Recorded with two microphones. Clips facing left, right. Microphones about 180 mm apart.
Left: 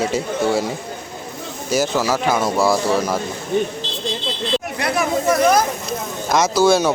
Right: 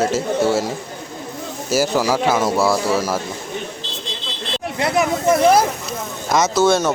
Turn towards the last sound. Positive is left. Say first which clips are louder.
# left 1 dB
turn(degrees=0)  # may be behind; listen again after turning